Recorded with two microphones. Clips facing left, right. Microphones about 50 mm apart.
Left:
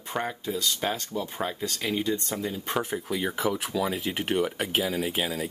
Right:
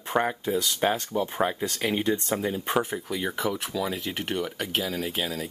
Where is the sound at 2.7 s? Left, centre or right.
Centre.